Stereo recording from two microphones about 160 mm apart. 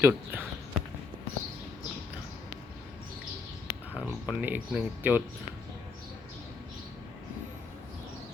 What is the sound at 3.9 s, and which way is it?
Speech, 10° right (ahead or behind).